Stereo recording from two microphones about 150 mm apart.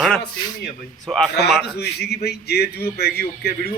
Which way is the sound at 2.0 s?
90° left.